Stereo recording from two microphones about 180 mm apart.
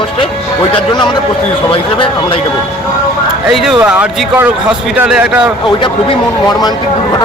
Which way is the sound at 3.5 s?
Centre (ahead or behind).